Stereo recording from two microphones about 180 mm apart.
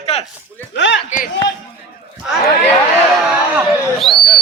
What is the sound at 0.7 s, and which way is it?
Speech, 80° left.